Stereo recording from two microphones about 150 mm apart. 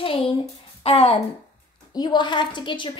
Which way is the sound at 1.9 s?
30° left (ahead or behind).